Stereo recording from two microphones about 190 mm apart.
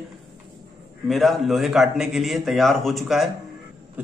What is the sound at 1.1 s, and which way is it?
A man's voice, centre (ahead or behind).